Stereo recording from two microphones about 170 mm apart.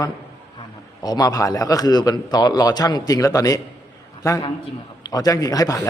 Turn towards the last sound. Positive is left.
turn(degrees=20)  # may be behind; listen again after turning